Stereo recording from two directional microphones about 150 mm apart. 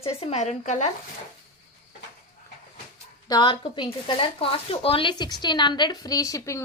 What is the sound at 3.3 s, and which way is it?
A woman's voice, 30° left (ahead or behind).